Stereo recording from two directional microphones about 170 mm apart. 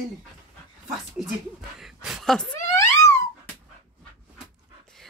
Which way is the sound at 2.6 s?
15° left (ahead or behind).